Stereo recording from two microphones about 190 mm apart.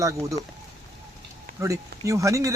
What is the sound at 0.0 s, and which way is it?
Speech, 15° right (ahead or behind).